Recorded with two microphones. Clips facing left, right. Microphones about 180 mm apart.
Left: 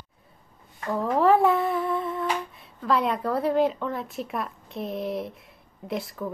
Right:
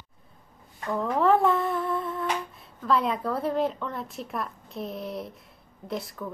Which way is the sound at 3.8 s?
Centre (ahead or behind).